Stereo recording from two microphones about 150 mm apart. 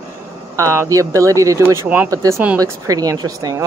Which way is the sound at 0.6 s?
20° right (ahead or behind).